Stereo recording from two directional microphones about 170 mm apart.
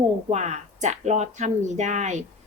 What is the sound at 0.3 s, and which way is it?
A woman's voice, 45° right (ahead or behind).